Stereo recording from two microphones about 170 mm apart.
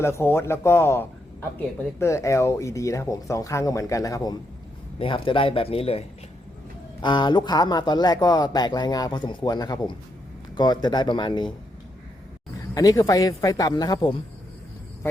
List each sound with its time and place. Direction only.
0.0 s a man's voice: 15° left (ahead or behind)
12.7 s speech: 20° left (ahead or behind)